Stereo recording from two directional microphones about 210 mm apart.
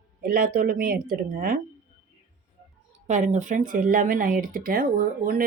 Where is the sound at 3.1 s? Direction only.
35° right (ahead or behind).